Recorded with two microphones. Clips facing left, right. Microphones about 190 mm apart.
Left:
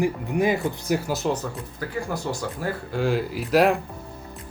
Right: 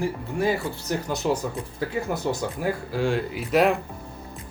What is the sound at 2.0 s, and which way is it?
Speech, 20° right (ahead or behind).